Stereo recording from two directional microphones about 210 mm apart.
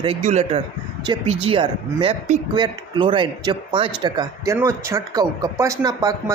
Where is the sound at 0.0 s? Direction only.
30° right (ahead or behind).